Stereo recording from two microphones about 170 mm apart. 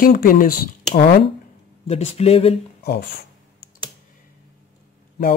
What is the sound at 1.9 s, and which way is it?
Speech, 40° left (ahead or behind).